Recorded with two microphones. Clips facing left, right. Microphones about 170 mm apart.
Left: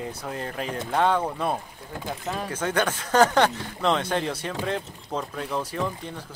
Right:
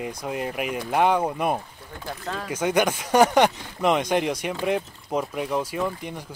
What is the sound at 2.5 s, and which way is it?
Speech, 10° right (ahead or behind).